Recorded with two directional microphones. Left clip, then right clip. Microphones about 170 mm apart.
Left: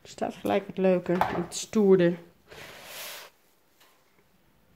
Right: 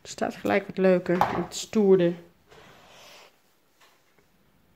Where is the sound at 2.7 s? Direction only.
65° left (ahead or behind).